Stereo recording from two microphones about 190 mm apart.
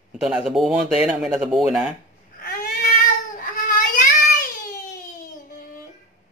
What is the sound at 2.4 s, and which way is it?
Baby cry, 50° left (ahead or behind).